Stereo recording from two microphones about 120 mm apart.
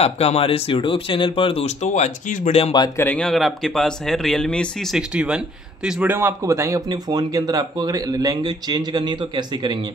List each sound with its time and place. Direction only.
0.0 s speech: 55° left (ahead or behind)
3.0 s speech: 15° left (ahead or behind)
3.3 s speech: centre (ahead or behind)
5.1 s speech: 10° right (ahead or behind)
6.1 s speech: 20° right (ahead or behind); by 9.8 s 35° right (ahead or behind)